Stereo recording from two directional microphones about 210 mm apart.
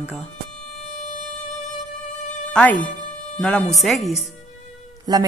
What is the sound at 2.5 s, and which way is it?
A woman's voice, 5° left (ahead or behind).